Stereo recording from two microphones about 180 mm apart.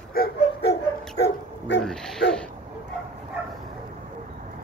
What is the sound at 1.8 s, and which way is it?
Speech, 5° left (ahead or behind).